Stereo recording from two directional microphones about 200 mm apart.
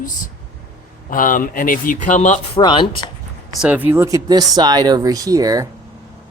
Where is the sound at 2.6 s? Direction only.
25° left (ahead or behind).